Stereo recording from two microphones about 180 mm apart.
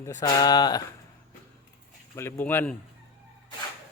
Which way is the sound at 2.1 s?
15° left (ahead or behind).